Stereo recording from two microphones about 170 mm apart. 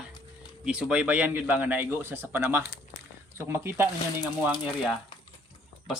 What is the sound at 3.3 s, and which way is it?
Speech, 15° right (ahead or behind).